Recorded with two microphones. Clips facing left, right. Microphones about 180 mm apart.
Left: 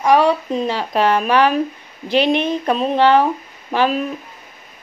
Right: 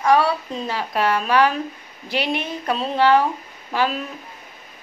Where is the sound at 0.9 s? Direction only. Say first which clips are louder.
Left 3 dB; 20° left (ahead or behind).